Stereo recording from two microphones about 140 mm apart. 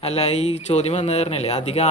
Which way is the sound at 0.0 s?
50° left (ahead or behind).